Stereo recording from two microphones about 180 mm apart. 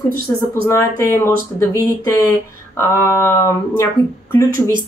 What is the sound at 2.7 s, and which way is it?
Speech, 15° left (ahead or behind).